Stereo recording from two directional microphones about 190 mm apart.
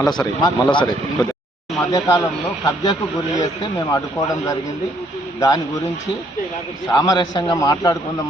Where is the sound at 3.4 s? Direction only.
20° left (ahead or behind).